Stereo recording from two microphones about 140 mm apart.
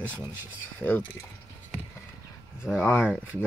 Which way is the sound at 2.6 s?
15° left (ahead or behind).